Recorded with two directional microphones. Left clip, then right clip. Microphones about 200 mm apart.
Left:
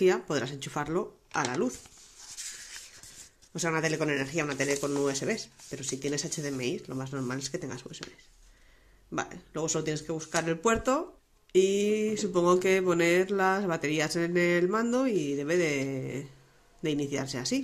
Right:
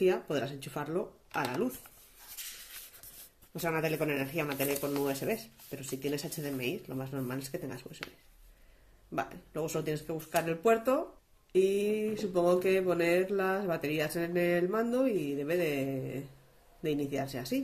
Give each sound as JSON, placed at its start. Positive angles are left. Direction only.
{"t": 0.0, "sound": "speech", "side_deg": 30}
{"t": 3.5, "sound": "speech", "side_deg": 25}
{"t": 9.1, "sound": "speech", "side_deg": 25}